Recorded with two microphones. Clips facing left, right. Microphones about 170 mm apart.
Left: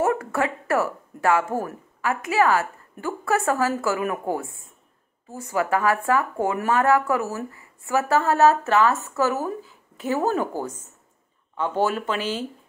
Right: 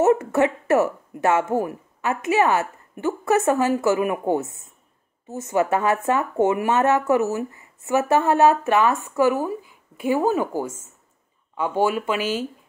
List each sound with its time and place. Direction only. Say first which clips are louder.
0.0 s a woman's voice: right 5 dB; 20° right (ahead or behind)